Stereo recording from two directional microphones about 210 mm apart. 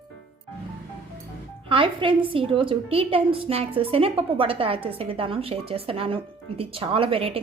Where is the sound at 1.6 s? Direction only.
25° right (ahead or behind).